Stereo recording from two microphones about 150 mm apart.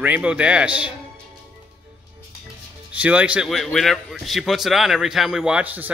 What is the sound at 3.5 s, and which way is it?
A man's voice, centre (ahead or behind).